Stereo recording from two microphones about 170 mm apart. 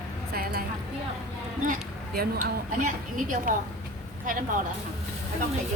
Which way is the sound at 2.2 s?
65° right (ahead or behind).